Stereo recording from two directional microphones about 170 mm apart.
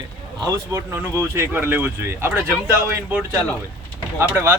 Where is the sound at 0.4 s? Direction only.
15° right (ahead or behind).